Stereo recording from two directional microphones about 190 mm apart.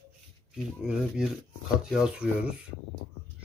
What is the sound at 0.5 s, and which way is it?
Speech, 5° right (ahead or behind).